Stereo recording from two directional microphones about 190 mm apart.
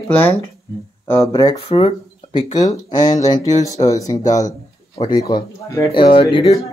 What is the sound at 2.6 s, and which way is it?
Speech, 20° left (ahead or behind).